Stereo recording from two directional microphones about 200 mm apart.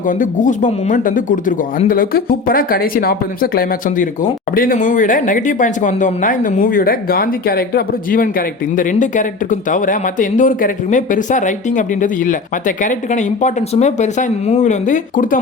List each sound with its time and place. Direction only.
0.1 s speech: 40° left (ahead or behind)